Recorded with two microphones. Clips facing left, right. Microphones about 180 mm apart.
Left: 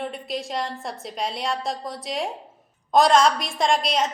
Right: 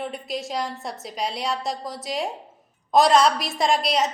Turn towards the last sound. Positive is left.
turn(degrees=0)  # may be behind; listen again after turning